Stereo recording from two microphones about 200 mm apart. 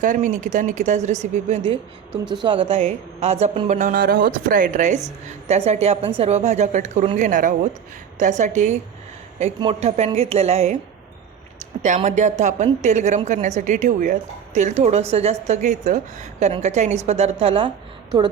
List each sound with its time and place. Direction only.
0.0 s a woman's voice: 40° right (ahead or behind)